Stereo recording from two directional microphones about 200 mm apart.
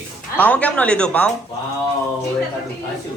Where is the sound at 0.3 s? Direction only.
10° left (ahead or behind).